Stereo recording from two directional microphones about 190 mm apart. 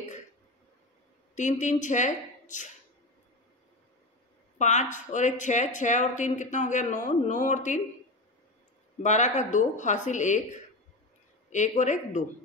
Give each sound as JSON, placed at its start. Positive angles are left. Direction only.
{"t": 1.3, "sound": "a woman's voice", "side_deg": 40}
{"t": 4.6, "sound": "speech", "side_deg": 40}
{"t": 9.0, "sound": "speech", "side_deg": 40}